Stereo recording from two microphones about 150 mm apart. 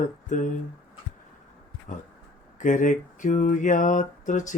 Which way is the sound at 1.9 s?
60° left (ahead or behind).